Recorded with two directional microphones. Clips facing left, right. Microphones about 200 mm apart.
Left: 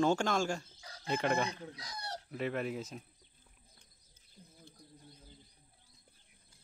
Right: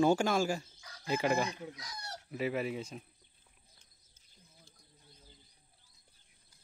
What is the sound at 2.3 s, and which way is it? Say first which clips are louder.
Speech: right 2 dB; 5° right (ahead or behind).